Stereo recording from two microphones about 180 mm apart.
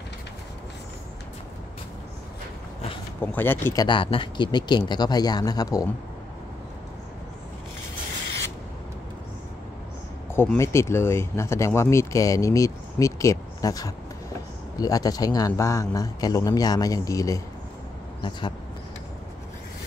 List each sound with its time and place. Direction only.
3.2 s speech: 10° left (ahead or behind)
3.8 s speech: 30° left (ahead or behind)
10.3 s speech: 15° left (ahead or behind)